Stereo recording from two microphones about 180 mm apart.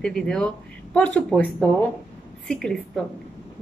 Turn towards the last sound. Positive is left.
turn(degrees=5)  # may be behind; listen again after turning